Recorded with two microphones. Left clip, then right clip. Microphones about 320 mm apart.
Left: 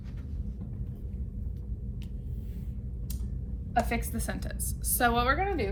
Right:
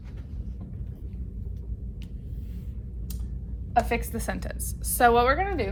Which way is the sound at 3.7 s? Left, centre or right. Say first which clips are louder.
Right 5 dB; centre.